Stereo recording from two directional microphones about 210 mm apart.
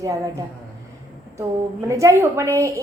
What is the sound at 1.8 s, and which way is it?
Speech, 15° right (ahead or behind).